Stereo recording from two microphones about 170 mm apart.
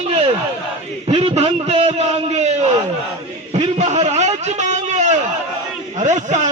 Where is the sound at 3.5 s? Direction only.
40° right (ahead or behind).